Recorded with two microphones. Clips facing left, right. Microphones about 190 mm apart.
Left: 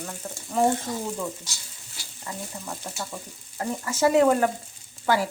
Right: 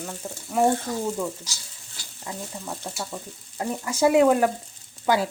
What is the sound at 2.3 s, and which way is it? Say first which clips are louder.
Speech: right 1 dB; 10° right (ahead or behind).